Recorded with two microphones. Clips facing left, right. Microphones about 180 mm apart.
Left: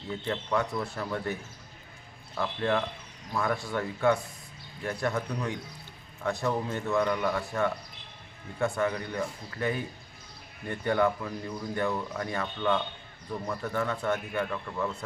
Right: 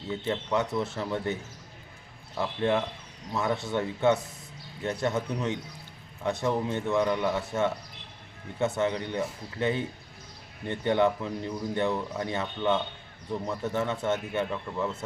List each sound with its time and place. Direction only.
0.1 s speech: 20° right (ahead or behind)